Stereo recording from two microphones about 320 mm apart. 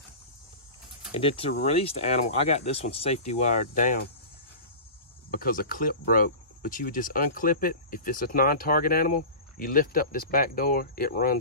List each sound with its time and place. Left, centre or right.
1.1 s speech: centre
5.3 s speech: left